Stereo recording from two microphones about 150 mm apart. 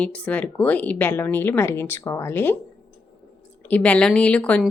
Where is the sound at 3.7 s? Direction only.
10° left (ahead or behind).